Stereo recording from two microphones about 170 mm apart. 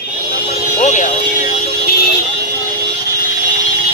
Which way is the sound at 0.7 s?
45° left (ahead or behind).